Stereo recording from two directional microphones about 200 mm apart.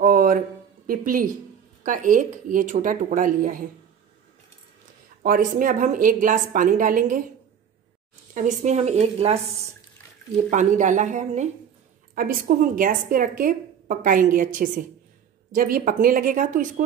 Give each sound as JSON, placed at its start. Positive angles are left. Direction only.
{"t": 0.0, "sound": "a sound", "side_deg": -45}
{"t": 0.8, "sound": "a woman's voice", "side_deg": -45}
{"t": 5.2, "sound": "a woman's voice", "side_deg": -45}
{"t": 8.4, "sound": "a woman's voice", "side_deg": -35}